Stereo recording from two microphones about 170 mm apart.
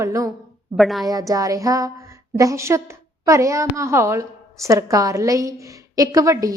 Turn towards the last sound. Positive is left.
turn(degrees=-20)  # may be behind; listen again after turning